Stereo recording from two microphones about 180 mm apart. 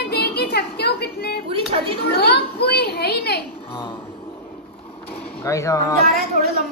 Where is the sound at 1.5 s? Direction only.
30° right (ahead or behind).